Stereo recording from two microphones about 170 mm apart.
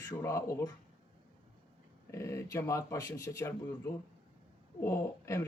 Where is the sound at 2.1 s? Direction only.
15° left (ahead or behind).